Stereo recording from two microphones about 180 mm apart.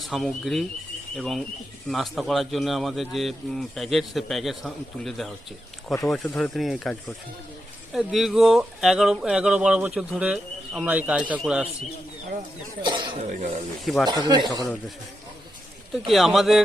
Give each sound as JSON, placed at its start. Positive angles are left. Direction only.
{"t": 0.0, "sound": "speech", "side_deg": 0}
{"t": 7.9, "sound": "speech", "side_deg": 0}
{"t": 12.8, "sound": "speech", "side_deg": -25}
{"t": 13.8, "sound": "speech", "side_deg": 0}
{"t": 14.1, "sound": "speech", "side_deg": -25}
{"t": 16.0, "sound": "speech", "side_deg": 0}